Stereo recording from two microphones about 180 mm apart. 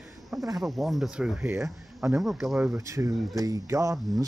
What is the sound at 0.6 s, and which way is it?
Speech, centre (ahead or behind).